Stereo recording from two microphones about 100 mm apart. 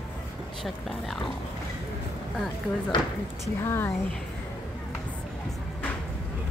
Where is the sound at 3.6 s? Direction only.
25° left (ahead or behind).